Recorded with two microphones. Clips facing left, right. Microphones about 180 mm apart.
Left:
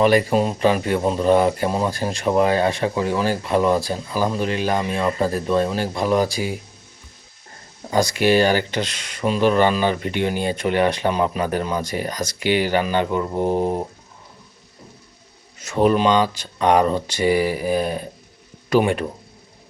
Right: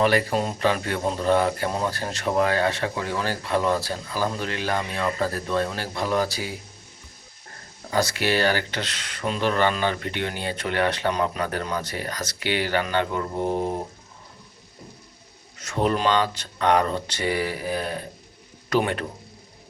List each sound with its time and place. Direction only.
0.0 s speech: 15° left (ahead or behind)
7.9 s speech: 15° left (ahead or behind)
13.4 s speech: 35° left (ahead or behind)
15.6 s speech: 10° left (ahead or behind)